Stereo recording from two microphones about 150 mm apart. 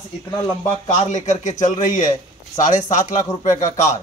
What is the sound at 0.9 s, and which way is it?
A man's voice, 50° left (ahead or behind).